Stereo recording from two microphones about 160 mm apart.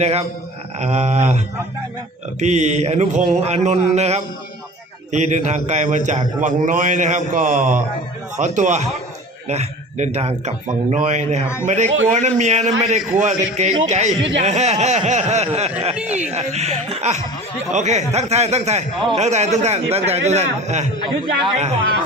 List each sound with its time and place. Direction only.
0.0 s speech: 40° right (ahead or behind)
2.4 s speech: 45° right (ahead or behind)
14.2 s speech: 90° right
14.4 s speech: 45° right (ahead or behind)